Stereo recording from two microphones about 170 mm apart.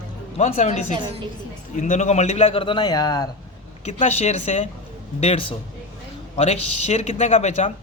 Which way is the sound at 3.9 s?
40° left (ahead or behind).